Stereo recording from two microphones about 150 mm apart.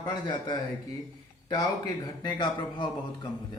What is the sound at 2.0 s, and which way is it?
Speech, 30° left (ahead or behind).